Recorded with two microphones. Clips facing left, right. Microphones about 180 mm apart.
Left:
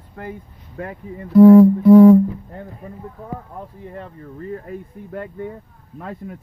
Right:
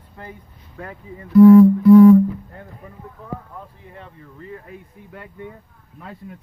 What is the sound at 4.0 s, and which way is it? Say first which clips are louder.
Speech: left 5 dB; 40° left (ahead or behind).